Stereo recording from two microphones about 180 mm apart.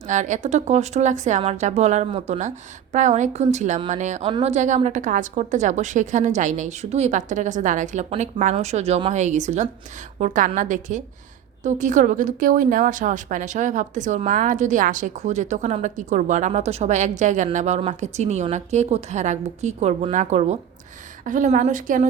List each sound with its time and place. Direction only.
0.1 s a woman's voice: 45° right (ahead or behind)
4.3 s speech: 30° right (ahead or behind)
4.5 s a woman's voice: 40° right (ahead or behind)